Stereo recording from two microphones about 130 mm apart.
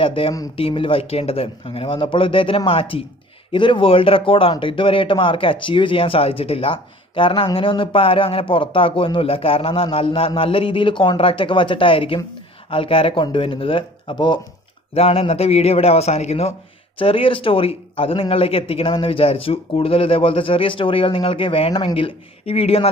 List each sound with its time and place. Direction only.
0.0 s speech: 45° left (ahead or behind)
15.0 s speech: 50° left (ahead or behind)
17.0 s speech: 45° left (ahead or behind)